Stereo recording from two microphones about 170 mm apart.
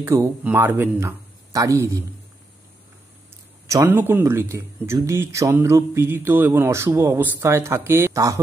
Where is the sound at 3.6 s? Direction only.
15° right (ahead or behind).